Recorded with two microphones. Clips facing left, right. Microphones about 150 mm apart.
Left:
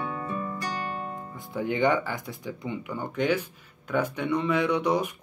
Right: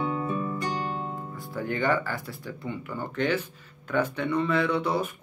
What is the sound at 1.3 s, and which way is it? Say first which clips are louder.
Speech: left 4 dB; 20° left (ahead or behind).